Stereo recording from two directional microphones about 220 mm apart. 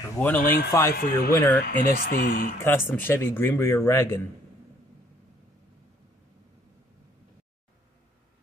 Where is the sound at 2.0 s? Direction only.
40° left (ahead or behind).